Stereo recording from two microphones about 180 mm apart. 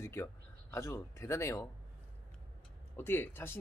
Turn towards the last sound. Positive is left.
turn(degrees=10)  # may be behind; listen again after turning